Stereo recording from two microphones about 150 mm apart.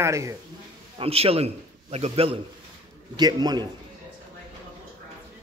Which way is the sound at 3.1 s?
25° right (ahead or behind).